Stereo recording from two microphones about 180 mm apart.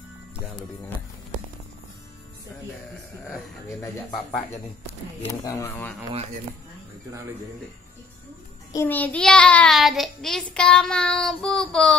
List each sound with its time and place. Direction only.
3.3 s speech: 15° left (ahead or behind)
5.4 s speech: 15° left (ahead or behind)
7.1 s speech: 15° right (ahead or behind)
8.7 s child singing: 10° left (ahead or behind)